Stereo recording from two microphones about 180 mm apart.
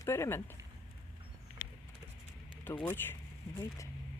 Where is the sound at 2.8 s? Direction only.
10° left (ahead or behind).